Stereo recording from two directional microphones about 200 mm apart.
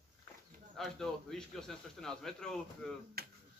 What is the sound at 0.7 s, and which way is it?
A man's voice, centre (ahead or behind).